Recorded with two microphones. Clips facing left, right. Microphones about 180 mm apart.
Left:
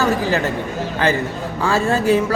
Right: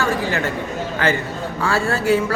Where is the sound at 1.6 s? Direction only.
15° left (ahead or behind).